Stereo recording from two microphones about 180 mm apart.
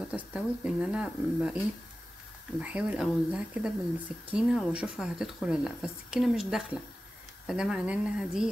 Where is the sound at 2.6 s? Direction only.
5° right (ahead or behind).